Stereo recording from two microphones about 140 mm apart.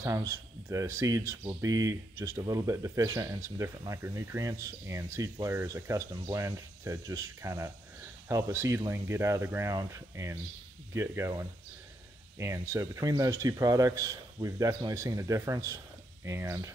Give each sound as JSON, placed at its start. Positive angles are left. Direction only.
{"t": 0.0, "sound": "speech", "side_deg": -20}